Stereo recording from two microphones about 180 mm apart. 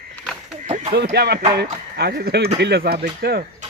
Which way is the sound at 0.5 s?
40° right (ahead or behind).